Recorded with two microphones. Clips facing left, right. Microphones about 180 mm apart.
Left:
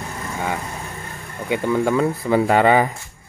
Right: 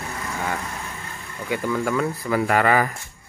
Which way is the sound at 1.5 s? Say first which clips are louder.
Left 4 dB; 25° left (ahead or behind).